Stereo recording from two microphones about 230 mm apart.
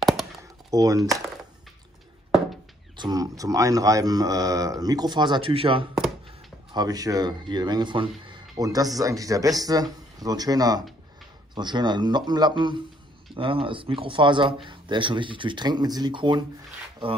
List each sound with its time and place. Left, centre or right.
0.7 s speech: centre
3.0 s a man's voice: centre